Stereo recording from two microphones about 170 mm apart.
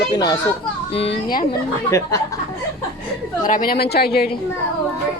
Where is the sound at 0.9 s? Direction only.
35° left (ahead or behind).